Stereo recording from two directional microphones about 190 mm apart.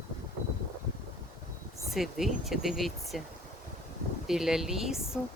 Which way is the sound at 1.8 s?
Centre (ahead or behind).